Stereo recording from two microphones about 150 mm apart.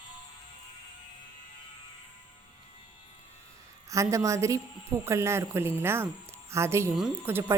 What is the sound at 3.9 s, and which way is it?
A woman's voice, 20° right (ahead or behind).